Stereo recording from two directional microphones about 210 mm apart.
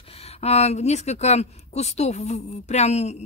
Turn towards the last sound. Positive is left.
turn(degrees=30)  # may be behind; listen again after turning